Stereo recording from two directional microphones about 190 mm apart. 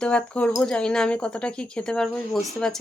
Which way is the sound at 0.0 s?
5° left (ahead or behind).